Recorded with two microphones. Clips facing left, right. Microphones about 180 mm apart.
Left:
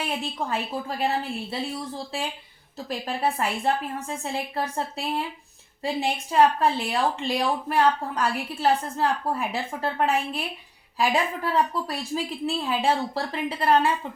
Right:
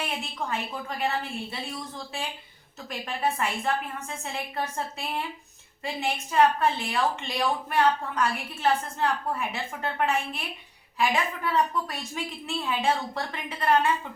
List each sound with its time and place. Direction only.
0.2 s a woman's voice: 35° left (ahead or behind)
3.1 s a woman's voice: 35° left (ahead or behind)